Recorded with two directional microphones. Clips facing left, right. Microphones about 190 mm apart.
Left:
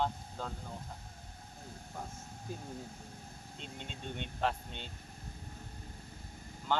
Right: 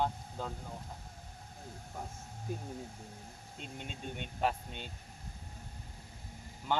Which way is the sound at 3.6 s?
5° right (ahead or behind).